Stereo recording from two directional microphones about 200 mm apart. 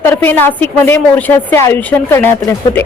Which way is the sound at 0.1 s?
10° left (ahead or behind).